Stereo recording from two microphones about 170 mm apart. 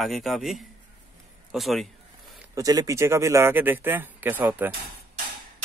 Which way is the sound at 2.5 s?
20° right (ahead or behind).